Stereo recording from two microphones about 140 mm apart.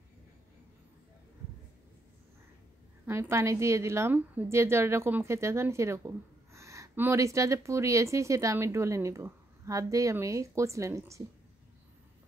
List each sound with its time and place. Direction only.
3.1 s a woman's voice: 20° right (ahead or behind)